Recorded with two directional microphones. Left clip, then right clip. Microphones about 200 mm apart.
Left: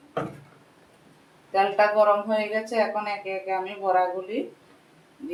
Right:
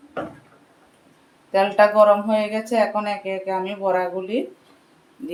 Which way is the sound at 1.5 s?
30° right (ahead or behind).